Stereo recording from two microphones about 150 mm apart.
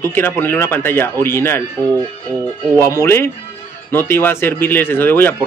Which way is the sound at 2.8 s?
15° left (ahead or behind).